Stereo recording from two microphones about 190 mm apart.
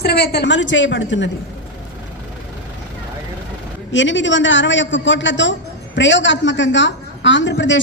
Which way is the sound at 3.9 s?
75° left (ahead or behind).